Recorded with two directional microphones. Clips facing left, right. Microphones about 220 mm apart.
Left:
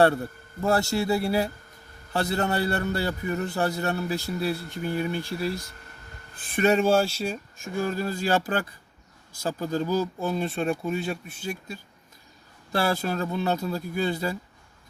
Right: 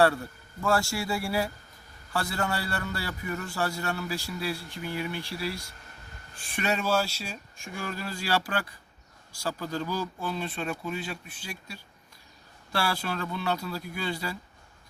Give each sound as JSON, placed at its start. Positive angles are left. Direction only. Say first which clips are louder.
{"t": 0.6, "sound": "a man's voice", "louder": "left 4 dB", "side_deg": 20}
{"t": 3.1, "sound": "speech", "louder": "left 6 dB", "side_deg": 35}
{"t": 3.4, "sound": "a man's voice", "louder": "left 5 dB", "side_deg": 20}
{"t": 4.3, "sound": "speech", "louder": "left 5 dB", "side_deg": 55}
{"t": 6.6, "sound": "speech", "louder": "left 7 dB", "side_deg": 50}
{"t": 12.7, "sound": "speech", "louder": "left 5 dB", "side_deg": 40}